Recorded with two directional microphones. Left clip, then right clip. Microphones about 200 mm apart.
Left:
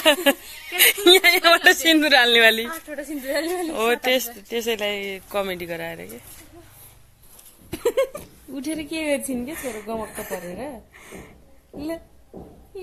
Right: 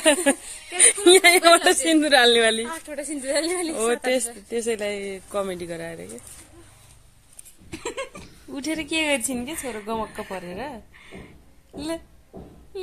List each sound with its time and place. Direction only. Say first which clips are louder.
0.0 s speech: left 2 dB; centre (ahead or behind)
2.6 s a woman's voice: left 1 dB; 40° right (ahead or behind)
3.6 s speech: left 2 dB; 10° right (ahead or behind)
7.7 s a sound: left 10 dB; 55° left (ahead or behind)
8.5 s a woman's voice: right 2 dB; 35° right (ahead or behind)
9.7 s speech: right 2 dB; 55° right (ahead or behind)
11.0 s a sound: left 2 dB; 60° left (ahead or behind)